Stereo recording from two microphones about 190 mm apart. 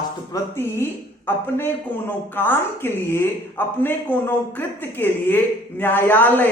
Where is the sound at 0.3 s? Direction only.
15° left (ahead or behind).